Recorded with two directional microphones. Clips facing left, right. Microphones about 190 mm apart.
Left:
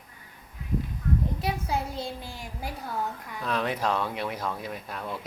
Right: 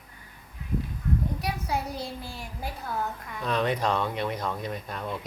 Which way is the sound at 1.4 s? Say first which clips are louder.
Left 1 dB; 25° left (ahead or behind).